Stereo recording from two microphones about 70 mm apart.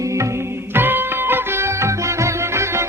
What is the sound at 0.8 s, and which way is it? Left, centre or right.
Music, right.